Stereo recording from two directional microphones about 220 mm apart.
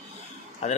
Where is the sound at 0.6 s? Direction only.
30° left (ahead or behind).